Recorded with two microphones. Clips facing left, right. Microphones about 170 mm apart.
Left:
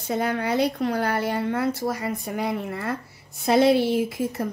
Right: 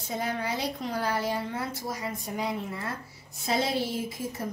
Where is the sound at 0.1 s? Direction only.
60° left (ahead or behind).